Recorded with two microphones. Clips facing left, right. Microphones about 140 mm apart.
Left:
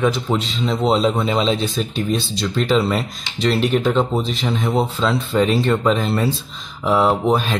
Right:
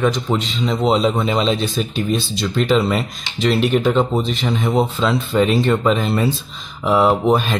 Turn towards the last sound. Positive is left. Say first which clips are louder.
# right 2 dB
turn(degrees=-5)  # may be behind; listen again after turning